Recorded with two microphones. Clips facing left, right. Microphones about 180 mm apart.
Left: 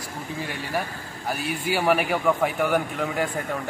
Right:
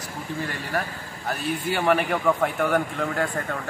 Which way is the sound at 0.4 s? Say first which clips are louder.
Even; centre (ahead or behind).